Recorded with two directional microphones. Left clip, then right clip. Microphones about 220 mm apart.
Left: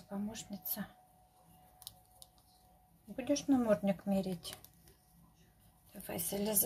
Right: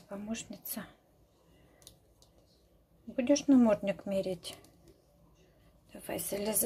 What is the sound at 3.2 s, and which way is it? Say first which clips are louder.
Speech: right 7 dB; 15° right (ahead or behind).